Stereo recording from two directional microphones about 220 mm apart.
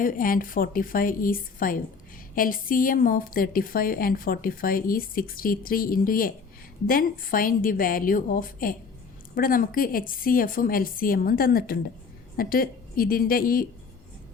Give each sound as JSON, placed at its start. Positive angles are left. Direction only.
{"t": 0.0, "sound": "a woman's voice", "side_deg": 40}